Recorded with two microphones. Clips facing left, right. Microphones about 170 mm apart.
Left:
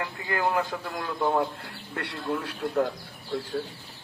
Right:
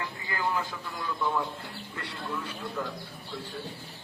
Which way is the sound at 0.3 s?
55° left (ahead or behind).